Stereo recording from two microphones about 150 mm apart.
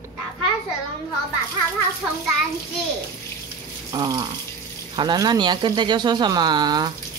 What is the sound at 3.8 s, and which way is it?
Water tap, 30° right (ahead or behind).